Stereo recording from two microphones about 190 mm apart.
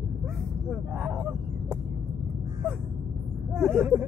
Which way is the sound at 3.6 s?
10° right (ahead or behind).